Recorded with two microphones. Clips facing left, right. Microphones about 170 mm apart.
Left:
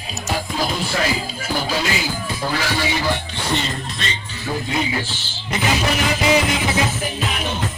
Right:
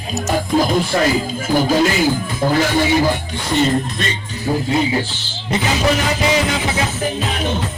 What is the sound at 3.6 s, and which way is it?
Music, 45° right (ahead or behind).